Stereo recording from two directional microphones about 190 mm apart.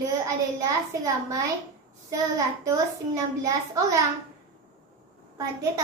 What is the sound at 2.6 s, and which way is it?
A child's voice, 15° right (ahead or behind).